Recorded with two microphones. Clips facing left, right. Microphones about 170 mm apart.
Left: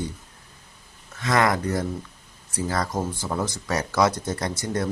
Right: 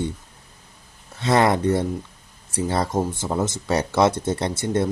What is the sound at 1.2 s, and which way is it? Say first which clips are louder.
Speech: right 4 dB; 30° right (ahead or behind).